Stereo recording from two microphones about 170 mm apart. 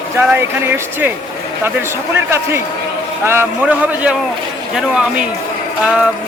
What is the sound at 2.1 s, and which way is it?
Speech, 15° right (ahead or behind).